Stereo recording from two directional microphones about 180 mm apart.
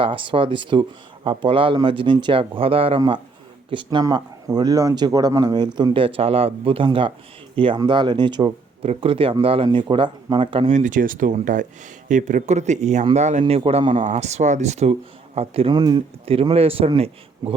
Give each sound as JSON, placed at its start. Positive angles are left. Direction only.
{"t": 0.0, "sound": "speech", "side_deg": -30}
{"t": 10.7, "sound": "speech", "side_deg": -45}
{"t": 13.4, "sound": "speech", "side_deg": -30}
{"t": 14.0, "sound": "speech", "side_deg": -40}